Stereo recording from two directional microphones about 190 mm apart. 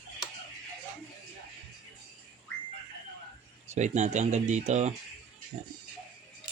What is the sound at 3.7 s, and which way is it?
Speech, 35° right (ahead or behind).